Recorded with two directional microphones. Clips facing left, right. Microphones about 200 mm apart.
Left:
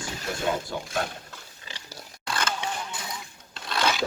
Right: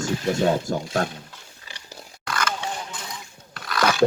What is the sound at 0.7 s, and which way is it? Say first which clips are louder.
Speech: right 7 dB; 45° right (ahead or behind).